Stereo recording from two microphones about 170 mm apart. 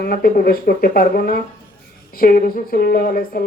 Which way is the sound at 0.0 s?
60° left (ahead or behind).